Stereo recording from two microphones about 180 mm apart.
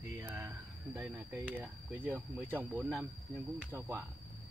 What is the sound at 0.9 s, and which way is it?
Speech, 5° right (ahead or behind).